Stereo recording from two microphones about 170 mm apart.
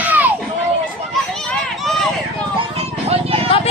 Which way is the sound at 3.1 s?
35° right (ahead or behind).